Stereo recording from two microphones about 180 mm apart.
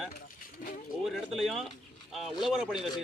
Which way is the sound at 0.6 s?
45° left (ahead or behind).